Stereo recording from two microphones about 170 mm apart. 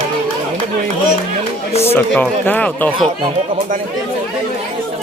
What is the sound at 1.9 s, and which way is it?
Speech, 10° left (ahead or behind).